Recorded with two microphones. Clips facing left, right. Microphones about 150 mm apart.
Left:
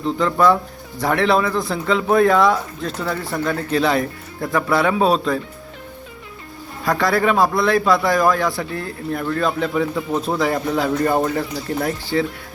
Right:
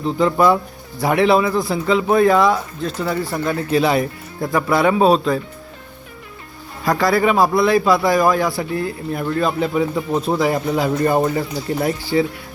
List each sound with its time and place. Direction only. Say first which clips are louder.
0.2 s speech: right 2 dB; 20° right (ahead or behind); by 5.4 s centre (ahead or behind)
7.0 s speech: right 1 dB; 5° right (ahead or behind)
11.5 s speech: right 2 dB; 20° right (ahead or behind)